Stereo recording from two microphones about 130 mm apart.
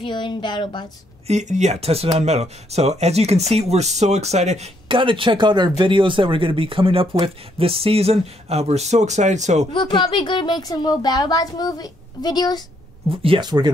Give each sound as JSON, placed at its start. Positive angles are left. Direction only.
{"t": 0.0, "sound": "speech", "side_deg": 35}
{"t": 1.2, "sound": "speech", "side_deg": -65}
{"t": 4.8, "sound": "speech", "side_deg": -40}
{"t": 9.7, "sound": "speech", "side_deg": 40}
{"t": 13.1, "sound": "speech", "side_deg": -45}